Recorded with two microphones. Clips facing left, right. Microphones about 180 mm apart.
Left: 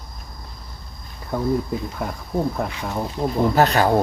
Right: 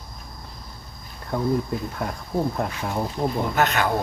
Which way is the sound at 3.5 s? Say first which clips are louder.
Left 5 dB; 35° left (ahead or behind).